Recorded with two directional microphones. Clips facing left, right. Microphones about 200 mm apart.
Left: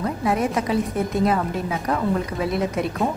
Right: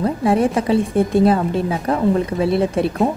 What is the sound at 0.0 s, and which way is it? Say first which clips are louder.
A woman's voice: right 6 dB; 30° right (ahead or behind).